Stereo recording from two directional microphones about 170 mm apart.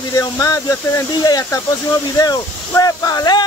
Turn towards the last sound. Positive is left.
turn(degrees=25)  # may be behind; listen again after turning